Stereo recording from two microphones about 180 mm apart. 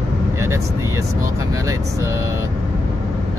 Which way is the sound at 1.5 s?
20° right (ahead or behind).